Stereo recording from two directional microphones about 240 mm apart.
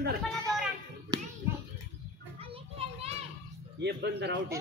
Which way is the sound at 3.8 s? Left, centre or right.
Right.